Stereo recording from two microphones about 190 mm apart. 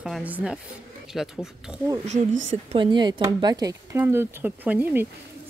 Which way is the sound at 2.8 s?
25° right (ahead or behind).